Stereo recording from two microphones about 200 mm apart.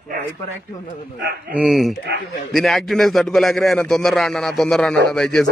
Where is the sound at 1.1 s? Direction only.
55° right (ahead or behind).